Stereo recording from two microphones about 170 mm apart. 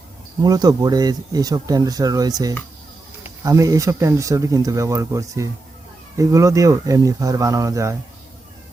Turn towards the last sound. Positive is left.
turn(degrees=-20)  # may be behind; listen again after turning